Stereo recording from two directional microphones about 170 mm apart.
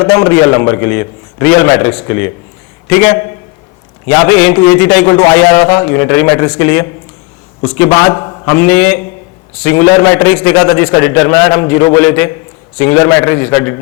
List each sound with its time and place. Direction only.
0.0 s a man's voice: 15° left (ahead or behind)
8.5 s a man's voice: 10° left (ahead or behind)
11.9 s a man's voice: 10° left (ahead or behind)